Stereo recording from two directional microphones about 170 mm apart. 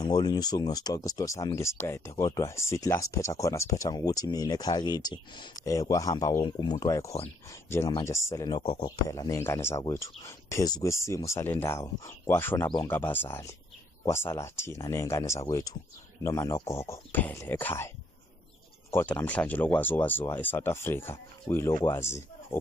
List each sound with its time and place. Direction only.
0.0 s speech: 25° left (ahead or behind)